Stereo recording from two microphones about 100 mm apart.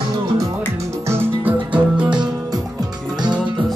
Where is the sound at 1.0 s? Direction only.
20° right (ahead or behind).